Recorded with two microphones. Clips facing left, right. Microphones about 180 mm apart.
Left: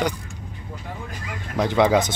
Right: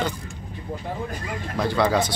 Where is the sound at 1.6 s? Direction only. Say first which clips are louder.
Left 3 dB; 20° left (ahead or behind).